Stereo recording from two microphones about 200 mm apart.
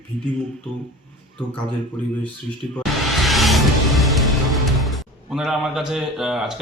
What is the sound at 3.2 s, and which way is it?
Music, centre (ahead or behind).